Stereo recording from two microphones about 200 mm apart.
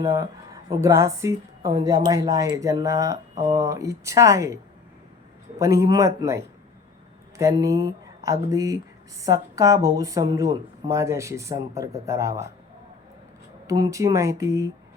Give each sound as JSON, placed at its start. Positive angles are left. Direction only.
{"t": 0.0, "sound": "a woman's voice", "side_deg": -15}
{"t": 5.5, "sound": "a woman's voice", "side_deg": -15}
{"t": 13.7, "sound": "a woman's voice", "side_deg": -15}